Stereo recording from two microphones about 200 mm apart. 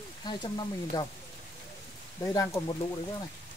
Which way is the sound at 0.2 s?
20° left (ahead or behind).